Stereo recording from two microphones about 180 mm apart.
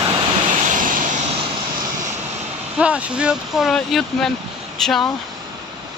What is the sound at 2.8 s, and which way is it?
Speech, 5° right (ahead or behind).